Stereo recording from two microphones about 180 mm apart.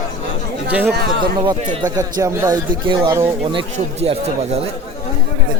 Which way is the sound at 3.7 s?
35° right (ahead or behind).